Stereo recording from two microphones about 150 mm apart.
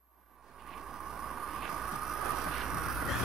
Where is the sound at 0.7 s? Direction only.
Centre (ahead or behind).